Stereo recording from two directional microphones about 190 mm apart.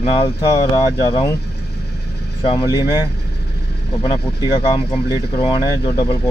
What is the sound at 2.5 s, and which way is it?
Speech, 20° left (ahead or behind).